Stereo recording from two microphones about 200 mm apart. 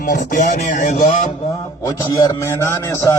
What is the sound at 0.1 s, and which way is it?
A man's voice, 40° left (ahead or behind).